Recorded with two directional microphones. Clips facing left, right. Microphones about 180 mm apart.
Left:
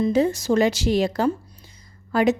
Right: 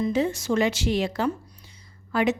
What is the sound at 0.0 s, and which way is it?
A woman's voice, 40° left (ahead or behind).